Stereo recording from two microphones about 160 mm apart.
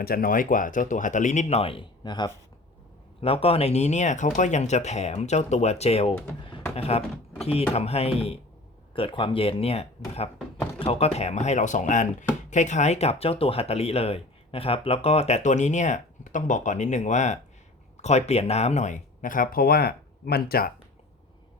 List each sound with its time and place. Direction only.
0.0 s speech: 65° left (ahead or behind)